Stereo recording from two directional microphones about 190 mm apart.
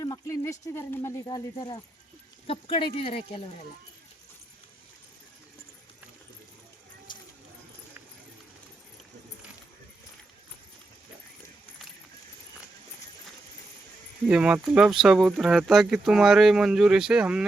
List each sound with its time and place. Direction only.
0.0 s speech: 15° left (ahead or behind)
14.3 s speech: 5° right (ahead or behind)